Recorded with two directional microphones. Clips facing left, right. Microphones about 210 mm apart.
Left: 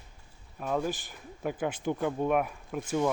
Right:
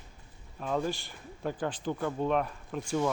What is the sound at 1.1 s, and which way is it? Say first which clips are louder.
Speech: left 1 dB; 10° left (ahead or behind).